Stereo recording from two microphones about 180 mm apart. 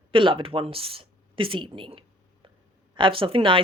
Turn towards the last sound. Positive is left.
turn(degrees=-30)  # may be behind; listen again after turning